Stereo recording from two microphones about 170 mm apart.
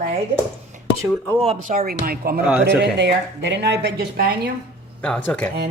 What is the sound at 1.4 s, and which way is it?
Speech, 35° right (ahead or behind).